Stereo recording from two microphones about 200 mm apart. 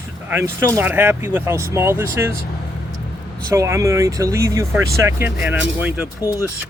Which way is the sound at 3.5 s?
15° right (ahead or behind).